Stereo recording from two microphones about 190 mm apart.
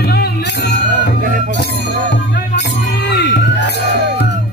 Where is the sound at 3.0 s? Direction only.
65° left (ahead or behind).